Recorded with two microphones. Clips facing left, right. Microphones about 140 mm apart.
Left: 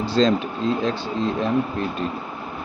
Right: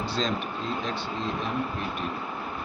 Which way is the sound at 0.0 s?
90° left.